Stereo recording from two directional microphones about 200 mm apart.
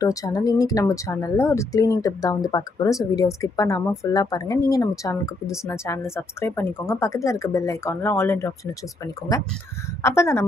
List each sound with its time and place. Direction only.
0.0 s speech: 20° left (ahead or behind)